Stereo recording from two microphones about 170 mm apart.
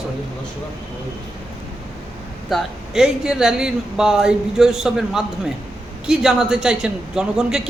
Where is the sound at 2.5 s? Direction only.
5° right (ahead or behind).